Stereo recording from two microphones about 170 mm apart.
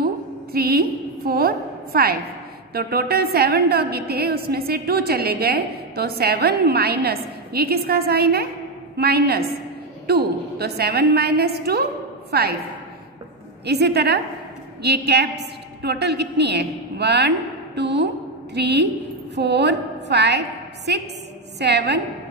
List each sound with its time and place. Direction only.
0.0 s a sound: 65° right (ahead or behind)
2.7 s a woman's voice: 65° right (ahead or behind)
13.7 s a woman's voice: 75° right (ahead or behind); by 22.0 s 90° right